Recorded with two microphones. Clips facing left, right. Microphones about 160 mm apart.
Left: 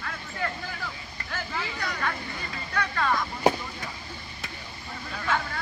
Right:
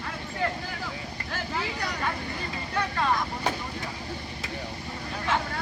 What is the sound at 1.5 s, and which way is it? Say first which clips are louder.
Vehicle: right 2 dB; 35° right (ahead or behind).